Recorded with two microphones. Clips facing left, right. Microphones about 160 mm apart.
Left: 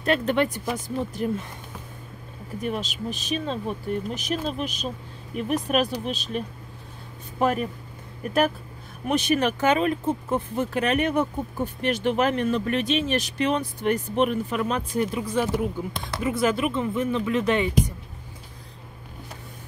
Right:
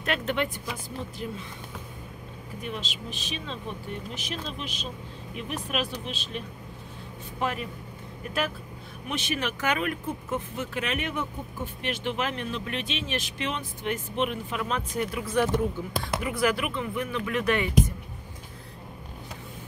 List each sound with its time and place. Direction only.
0.0 s speech: 35° left (ahead or behind)
1.2 s speech: 50° left (ahead or behind)
2.6 s speech: 45° left (ahead or behind)
9.0 s speech: 45° left (ahead or behind)
9.6 s speech: 30° left (ahead or behind)
15.2 s speech: 15° left (ahead or behind)
16.2 s speech: 25° left (ahead or behind)